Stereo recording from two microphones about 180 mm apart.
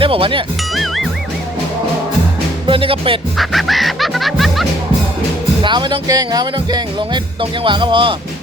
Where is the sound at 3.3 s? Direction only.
Centre (ahead or behind).